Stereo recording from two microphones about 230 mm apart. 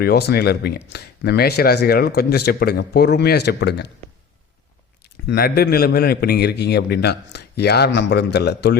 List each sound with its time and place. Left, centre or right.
0.0 s speech: left
5.3 s speech: left